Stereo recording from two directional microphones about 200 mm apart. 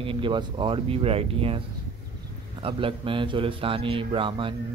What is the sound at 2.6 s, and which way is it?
Speech, 25° right (ahead or behind).